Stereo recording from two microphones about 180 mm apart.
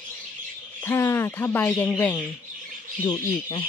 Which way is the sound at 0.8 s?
15° left (ahead or behind).